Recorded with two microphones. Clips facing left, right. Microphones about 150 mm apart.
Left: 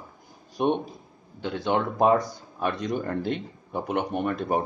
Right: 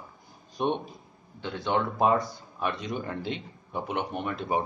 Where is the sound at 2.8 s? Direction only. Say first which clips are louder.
Left 5 dB; 45° left (ahead or behind).